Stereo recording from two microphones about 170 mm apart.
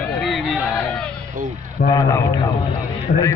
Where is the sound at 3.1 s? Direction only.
70° left (ahead or behind).